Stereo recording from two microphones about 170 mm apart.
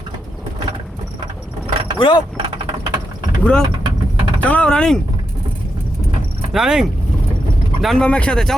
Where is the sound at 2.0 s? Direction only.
30° left (ahead or behind).